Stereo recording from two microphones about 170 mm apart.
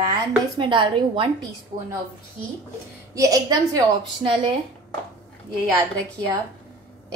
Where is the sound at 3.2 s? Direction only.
20° right (ahead or behind).